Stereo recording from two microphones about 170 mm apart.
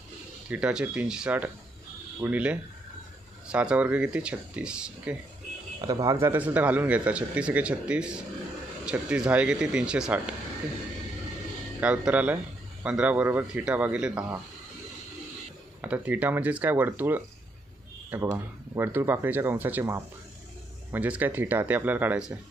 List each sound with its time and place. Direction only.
0.5 s speech: 5° right (ahead or behind)
5.8 s speech: 20° right (ahead or behind); by 10.3 s 5° right (ahead or behind)
11.8 s speech: 5° right (ahead or behind)
15.8 s speech: 10° right (ahead or behind)